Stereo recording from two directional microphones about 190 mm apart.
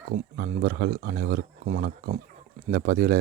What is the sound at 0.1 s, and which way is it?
Speech, 40° right (ahead or behind).